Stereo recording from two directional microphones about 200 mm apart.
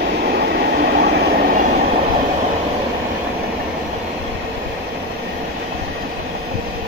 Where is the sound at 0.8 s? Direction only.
50° right (ahead or behind).